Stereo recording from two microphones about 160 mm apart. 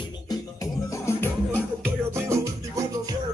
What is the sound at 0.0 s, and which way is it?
Music, 25° left (ahead or behind).